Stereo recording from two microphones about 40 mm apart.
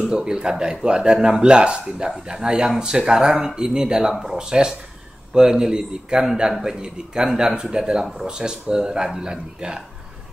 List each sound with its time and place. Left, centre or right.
0.1 s speech: centre
4.1 s speech: centre
4.4 s speech: centre